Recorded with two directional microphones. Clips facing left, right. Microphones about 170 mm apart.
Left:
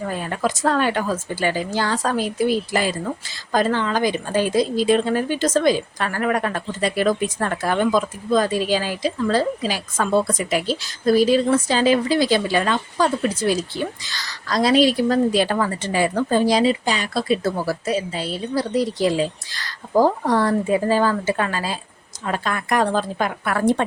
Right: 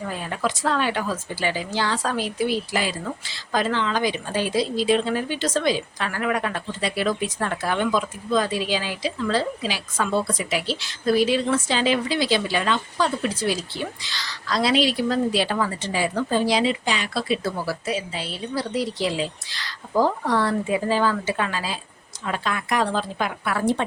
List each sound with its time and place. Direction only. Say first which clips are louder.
0.1 s speech: left 2 dB; 45° left (ahead or behind)